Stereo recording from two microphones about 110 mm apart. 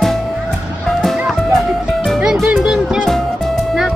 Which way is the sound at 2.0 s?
Centre (ahead or behind).